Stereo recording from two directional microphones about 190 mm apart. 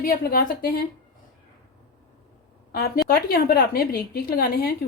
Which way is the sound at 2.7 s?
50° left (ahead or behind).